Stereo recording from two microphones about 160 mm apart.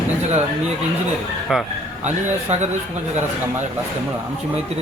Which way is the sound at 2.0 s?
45° right (ahead or behind).